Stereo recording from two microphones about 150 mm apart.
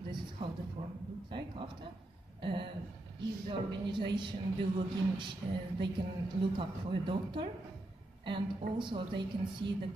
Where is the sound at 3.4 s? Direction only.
30° right (ahead or behind).